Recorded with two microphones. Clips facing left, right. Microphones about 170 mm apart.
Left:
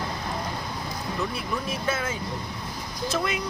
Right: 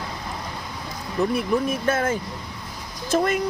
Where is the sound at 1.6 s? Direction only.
50° right (ahead or behind).